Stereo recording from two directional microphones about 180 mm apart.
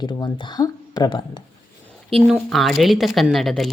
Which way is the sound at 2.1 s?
Centre (ahead or behind).